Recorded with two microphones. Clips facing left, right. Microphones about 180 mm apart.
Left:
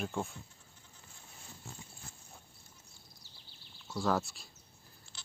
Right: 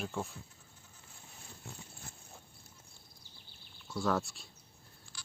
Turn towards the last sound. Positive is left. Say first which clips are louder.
# right 2 dB
turn(degrees=25)  # may be behind; listen again after turning